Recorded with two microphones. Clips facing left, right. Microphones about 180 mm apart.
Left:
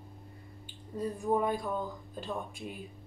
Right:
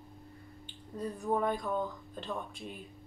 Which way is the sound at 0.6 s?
10° left (ahead or behind).